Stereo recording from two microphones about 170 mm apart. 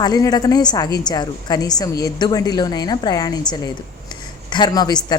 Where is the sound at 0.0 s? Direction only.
20° left (ahead or behind).